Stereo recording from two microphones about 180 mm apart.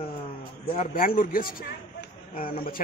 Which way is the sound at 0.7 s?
50° left (ahead or behind).